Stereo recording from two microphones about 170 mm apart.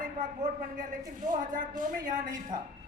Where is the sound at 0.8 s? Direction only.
50° right (ahead or behind).